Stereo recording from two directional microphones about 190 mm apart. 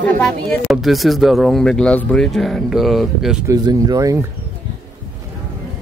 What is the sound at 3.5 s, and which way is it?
Speech, 20° right (ahead or behind).